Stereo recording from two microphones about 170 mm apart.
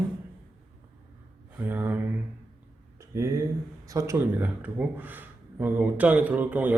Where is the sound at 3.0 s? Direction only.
15° right (ahead or behind).